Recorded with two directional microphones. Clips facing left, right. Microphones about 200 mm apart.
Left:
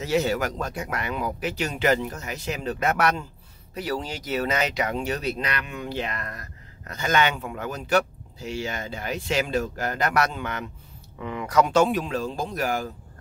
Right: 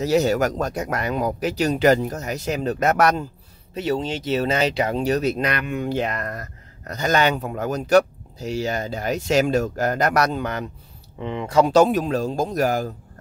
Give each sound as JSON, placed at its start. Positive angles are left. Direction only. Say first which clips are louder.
{"t": 0.0, "sound": "speech", "louder": "right 5 dB", "side_deg": -40}
{"t": 3.7, "sound": "speech", "louder": "right 6 dB", "side_deg": -25}
{"t": 11.1, "sound": "speech", "louder": "right 3 dB", "side_deg": -25}